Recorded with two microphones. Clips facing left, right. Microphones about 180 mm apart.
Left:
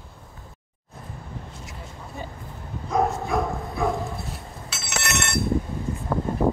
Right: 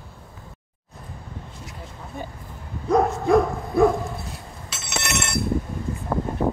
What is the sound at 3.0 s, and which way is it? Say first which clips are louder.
Bow-wow: right 6 dB; centre (ahead or behind).